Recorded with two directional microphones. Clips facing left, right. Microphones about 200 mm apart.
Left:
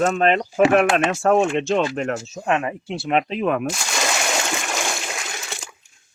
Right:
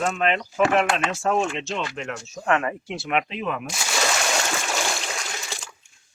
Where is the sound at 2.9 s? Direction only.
30° left (ahead or behind); by 3.7 s 50° left (ahead or behind).